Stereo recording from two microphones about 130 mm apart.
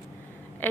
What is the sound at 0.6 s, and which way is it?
Speech, 15° left (ahead or behind).